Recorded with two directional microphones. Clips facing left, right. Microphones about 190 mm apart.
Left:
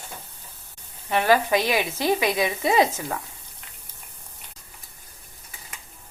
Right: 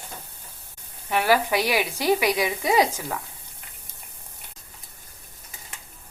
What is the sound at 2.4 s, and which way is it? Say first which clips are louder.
Speech: left 1 dB; 20° left (ahead or behind).